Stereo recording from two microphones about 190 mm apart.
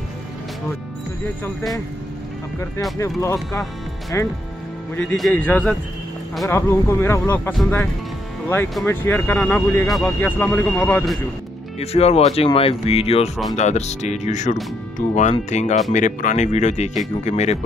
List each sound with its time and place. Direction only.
1.4 s a man's voice: centre (ahead or behind)
4.1 s speech: 15° left (ahead or behind)
4.9 s a man's voice: 5° left (ahead or behind)
11.8 s speech: 35° left (ahead or behind)